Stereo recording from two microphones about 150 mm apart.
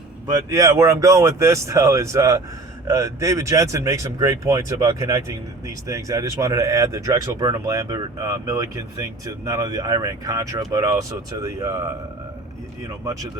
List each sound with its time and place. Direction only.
0.5 s speech: 20° right (ahead or behind)